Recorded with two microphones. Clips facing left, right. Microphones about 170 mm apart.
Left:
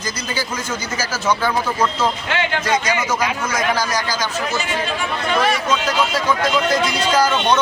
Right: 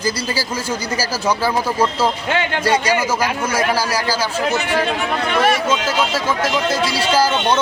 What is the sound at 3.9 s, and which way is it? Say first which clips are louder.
Speech: right 2 dB; 30° right (ahead or behind).